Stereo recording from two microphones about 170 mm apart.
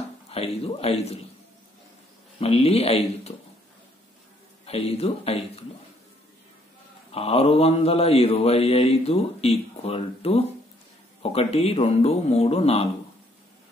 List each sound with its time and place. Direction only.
0.3 s mantra: 35° left (ahead or behind)
2.4 s mantra: 35° left (ahead or behind)
4.6 s mantra: 35° left (ahead or behind)
7.1 s mantra: 35° left (ahead or behind)